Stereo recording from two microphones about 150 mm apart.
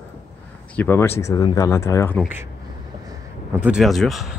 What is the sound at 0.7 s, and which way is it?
Speech, 15° left (ahead or behind).